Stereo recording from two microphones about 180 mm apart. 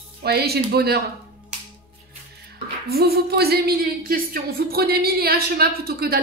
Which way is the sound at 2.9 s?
60° right (ahead or behind).